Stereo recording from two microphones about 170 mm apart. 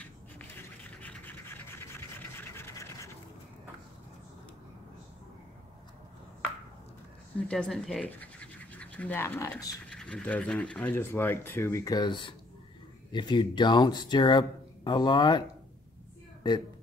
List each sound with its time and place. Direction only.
0.0 s a sound: 10° left (ahead or behind)
7.4 s speech: 5° left (ahead or behind); by 9.8 s 20° left (ahead or behind)
9.8 s speech: 5° left (ahead or behind); by 15.4 s 25° left (ahead or behind)